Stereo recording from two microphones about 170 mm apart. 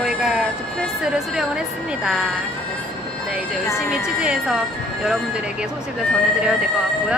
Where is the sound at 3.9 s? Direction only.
5° right (ahead or behind).